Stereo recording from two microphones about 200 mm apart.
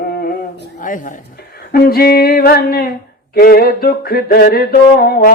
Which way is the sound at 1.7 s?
50° left (ahead or behind).